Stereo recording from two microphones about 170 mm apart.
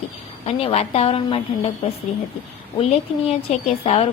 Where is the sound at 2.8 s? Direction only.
35° left (ahead or behind).